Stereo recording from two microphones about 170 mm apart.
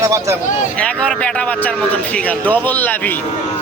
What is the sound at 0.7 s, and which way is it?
Speech, 5° left (ahead or behind).